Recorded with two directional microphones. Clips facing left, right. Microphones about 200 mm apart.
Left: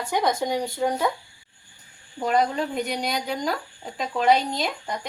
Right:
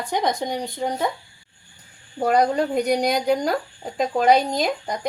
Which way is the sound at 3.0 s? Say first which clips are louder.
Right 7 dB; 45° right (ahead or behind).